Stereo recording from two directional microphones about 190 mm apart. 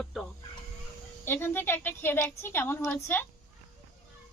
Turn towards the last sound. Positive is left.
turn(degrees=10)  # may be behind; listen again after turning